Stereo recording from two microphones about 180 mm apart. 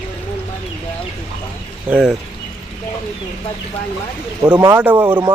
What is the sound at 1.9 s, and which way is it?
Speech, 5° right (ahead or behind).